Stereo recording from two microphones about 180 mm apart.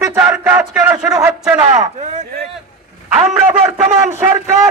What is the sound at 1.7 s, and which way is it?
Speech, 40° right (ahead or behind).